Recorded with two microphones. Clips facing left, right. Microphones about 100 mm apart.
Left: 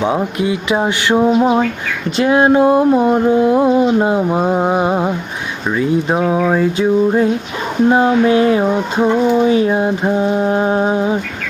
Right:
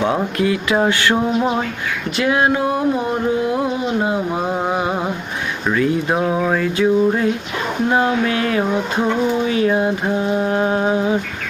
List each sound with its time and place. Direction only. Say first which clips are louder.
0.0 s speech: left 2 dB; 15° left (ahead or behind)